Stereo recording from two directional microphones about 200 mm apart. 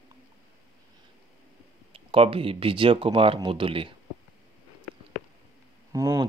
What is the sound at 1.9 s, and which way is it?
Speech, 30° right (ahead or behind).